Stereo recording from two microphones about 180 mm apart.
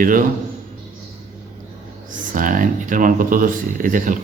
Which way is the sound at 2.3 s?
45° right (ahead or behind).